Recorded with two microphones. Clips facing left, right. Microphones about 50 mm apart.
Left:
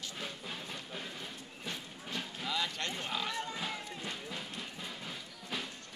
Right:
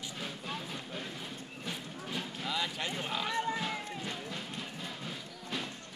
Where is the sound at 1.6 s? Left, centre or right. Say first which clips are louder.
Right 2 dB; centre.